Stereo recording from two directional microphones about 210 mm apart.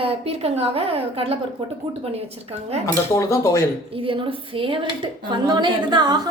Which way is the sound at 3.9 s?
25° right (ahead or behind).